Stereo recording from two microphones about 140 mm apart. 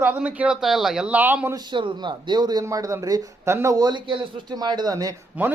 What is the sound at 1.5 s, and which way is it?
Speech, 35° right (ahead or behind).